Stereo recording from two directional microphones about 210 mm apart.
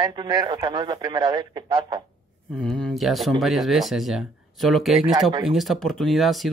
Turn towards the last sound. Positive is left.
turn(degrees=0)  # may be behind; listen again after turning